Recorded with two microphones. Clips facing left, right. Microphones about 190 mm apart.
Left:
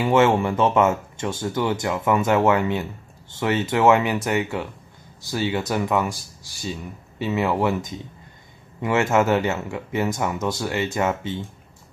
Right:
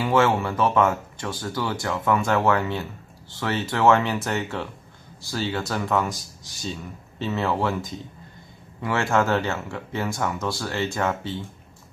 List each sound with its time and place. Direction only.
0.0 s speech: 20° left (ahead or behind)
7.2 s speech: 15° left (ahead or behind)